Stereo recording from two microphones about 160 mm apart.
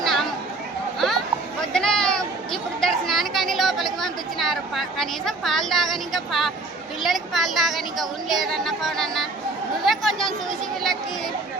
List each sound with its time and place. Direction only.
0.0 s chatter: centre (ahead or behind)
0.9 s children playing: centre (ahead or behind)
1.7 s chatter: 5° left (ahead or behind)
7.0 s speech: centre (ahead or behind)